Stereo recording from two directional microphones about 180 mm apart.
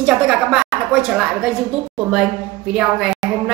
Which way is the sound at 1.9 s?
5° right (ahead or behind).